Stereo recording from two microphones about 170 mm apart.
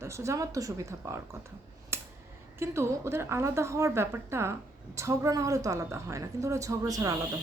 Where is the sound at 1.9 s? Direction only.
15° right (ahead or behind).